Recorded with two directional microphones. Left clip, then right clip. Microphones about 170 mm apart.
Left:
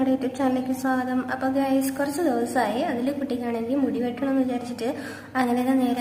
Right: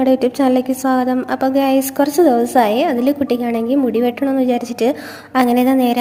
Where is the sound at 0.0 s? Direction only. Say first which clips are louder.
Right 10 dB; 40° right (ahead or behind).